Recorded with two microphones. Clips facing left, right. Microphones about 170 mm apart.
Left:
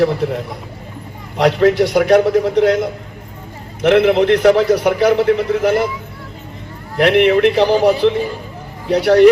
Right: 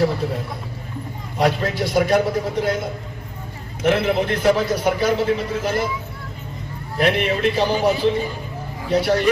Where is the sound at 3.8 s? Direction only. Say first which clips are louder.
Left 8 dB; 70° left (ahead or behind).